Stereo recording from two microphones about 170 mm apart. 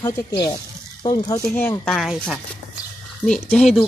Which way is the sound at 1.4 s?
10° left (ahead or behind).